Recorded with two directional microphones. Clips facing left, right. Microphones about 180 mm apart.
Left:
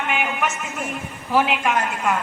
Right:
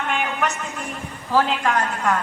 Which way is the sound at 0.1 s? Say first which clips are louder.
Even; 5° left (ahead or behind).